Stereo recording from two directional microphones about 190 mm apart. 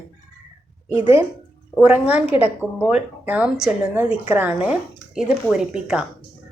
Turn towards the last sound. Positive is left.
turn(degrees=-5)  # may be behind; listen again after turning